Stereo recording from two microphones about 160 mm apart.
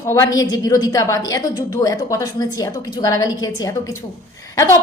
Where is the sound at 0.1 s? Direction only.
20° left (ahead or behind).